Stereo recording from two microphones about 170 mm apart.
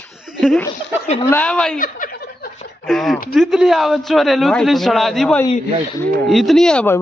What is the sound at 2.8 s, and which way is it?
A man's voice, centre (ahead or behind).